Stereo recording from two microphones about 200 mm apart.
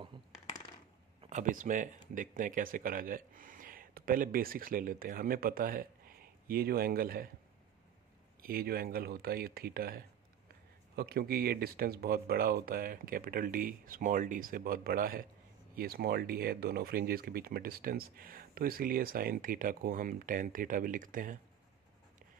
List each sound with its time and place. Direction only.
1.3 s speech: 40° right (ahead or behind)
8.4 s speech: 50° right (ahead or behind)